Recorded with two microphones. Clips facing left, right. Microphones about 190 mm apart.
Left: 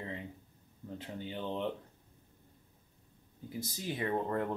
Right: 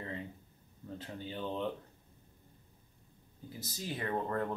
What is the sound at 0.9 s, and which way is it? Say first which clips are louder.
Speech: left 1 dB; 15° left (ahead or behind).